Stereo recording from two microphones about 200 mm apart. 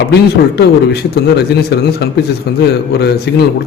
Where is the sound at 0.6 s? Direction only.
55° left (ahead or behind).